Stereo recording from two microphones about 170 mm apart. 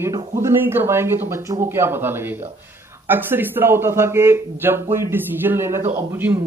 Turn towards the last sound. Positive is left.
turn(degrees=-10)  # may be behind; listen again after turning